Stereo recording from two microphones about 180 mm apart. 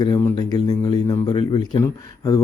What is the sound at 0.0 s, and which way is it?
Speech, 20° left (ahead or behind).